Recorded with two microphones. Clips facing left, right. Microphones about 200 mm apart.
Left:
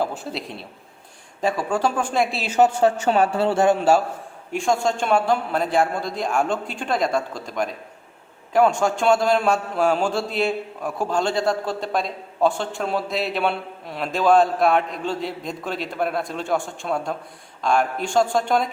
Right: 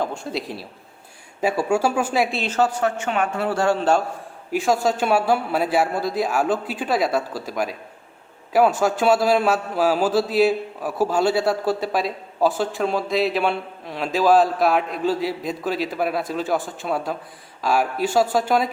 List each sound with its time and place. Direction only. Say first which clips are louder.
0.0 s a man's voice: even; 5° left (ahead or behind)
2.5 s a man's voice: left 4 dB; 20° left (ahead or behind)
3.8 s a man's voice: left 2 dB; 10° left (ahead or behind)
4.5 s a man's voice: right 1 dB; 5° right (ahead or behind)